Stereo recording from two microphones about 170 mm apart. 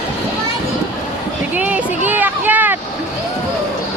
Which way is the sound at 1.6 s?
10° right (ahead or behind).